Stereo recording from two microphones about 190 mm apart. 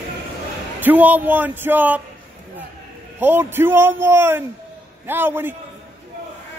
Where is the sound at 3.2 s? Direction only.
10° right (ahead or behind).